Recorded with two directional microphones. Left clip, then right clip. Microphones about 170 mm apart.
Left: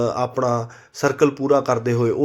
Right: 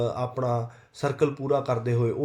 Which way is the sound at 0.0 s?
30° left (ahead or behind).